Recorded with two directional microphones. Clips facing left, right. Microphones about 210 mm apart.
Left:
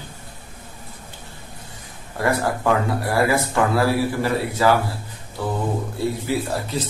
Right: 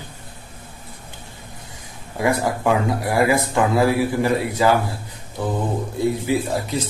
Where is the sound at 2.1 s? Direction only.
15° right (ahead or behind).